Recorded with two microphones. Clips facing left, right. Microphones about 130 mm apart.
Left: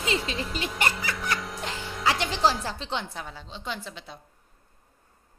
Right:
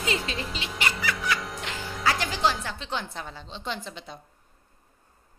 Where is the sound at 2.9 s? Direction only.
10° left (ahead or behind).